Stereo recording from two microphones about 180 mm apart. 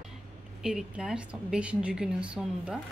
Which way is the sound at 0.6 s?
5° right (ahead or behind).